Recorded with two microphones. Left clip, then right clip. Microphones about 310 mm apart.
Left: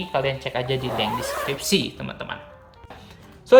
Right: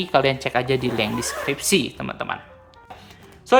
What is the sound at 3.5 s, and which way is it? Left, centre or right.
Speech, centre.